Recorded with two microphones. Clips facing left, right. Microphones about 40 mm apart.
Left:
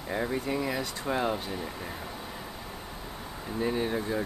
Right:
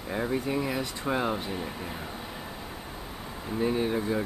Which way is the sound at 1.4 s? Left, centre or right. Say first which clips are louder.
Right 2 dB; centre.